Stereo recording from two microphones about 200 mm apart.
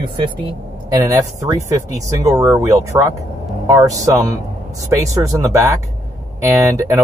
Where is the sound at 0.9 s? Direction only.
15° right (ahead or behind).